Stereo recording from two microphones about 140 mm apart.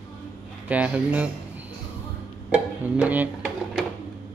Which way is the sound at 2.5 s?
10° right (ahead or behind).